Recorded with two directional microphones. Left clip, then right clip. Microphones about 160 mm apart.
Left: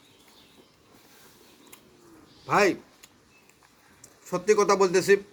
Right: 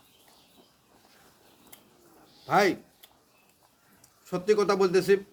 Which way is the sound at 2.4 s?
20° right (ahead or behind).